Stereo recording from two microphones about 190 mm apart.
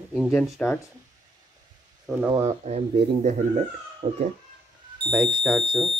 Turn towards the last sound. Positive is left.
turn(degrees=0)  # may be behind; listen again after turning